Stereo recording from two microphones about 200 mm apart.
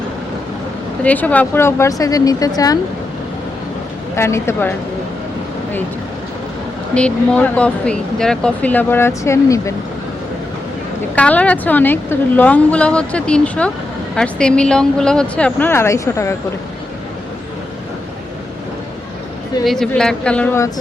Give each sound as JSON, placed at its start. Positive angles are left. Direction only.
{"t": 1.0, "sound": "speech", "side_deg": 5}
{"t": 4.1, "sound": "speech", "side_deg": 15}
{"t": 6.9, "sound": "speech", "side_deg": 5}
{"t": 11.1, "sound": "a woman's voice", "side_deg": 5}
{"t": 19.6, "sound": "a woman's voice", "side_deg": 0}